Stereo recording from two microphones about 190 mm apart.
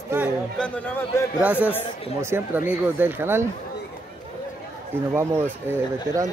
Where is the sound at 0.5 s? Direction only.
5° left (ahead or behind).